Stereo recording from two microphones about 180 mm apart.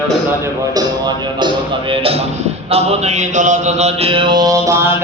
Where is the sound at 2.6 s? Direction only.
35° right (ahead or behind).